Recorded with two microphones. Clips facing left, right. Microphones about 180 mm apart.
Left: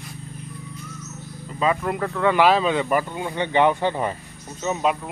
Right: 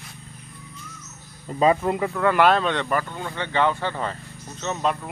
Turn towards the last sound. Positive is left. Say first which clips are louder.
# left 2 dB
turn(degrees=10)  # may be behind; listen again after turning